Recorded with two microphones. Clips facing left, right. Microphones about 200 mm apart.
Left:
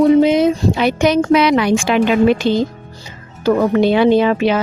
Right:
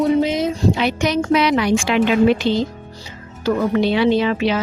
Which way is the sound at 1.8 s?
45° left (ahead or behind).